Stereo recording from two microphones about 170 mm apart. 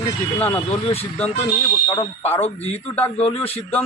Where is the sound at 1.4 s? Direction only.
20° left (ahead or behind).